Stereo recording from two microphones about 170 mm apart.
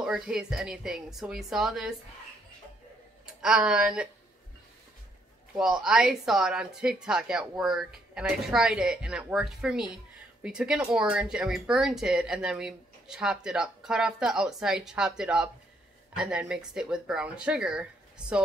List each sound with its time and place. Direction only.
0.0 s speech: 5° right (ahead or behind)
3.3 s speech: 5° right (ahead or behind)
5.6 s speech: centre (ahead or behind)